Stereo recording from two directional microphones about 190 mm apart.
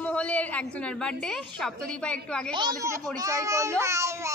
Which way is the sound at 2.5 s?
25° right (ahead or behind).